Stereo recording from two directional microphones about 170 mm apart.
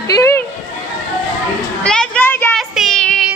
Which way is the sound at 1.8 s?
5° left (ahead or behind).